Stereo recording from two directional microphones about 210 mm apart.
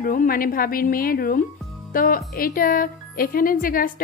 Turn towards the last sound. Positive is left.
turn(degrees=40)  # may be behind; listen again after turning